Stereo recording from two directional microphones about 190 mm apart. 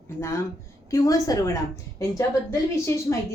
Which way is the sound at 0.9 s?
20° left (ahead or behind).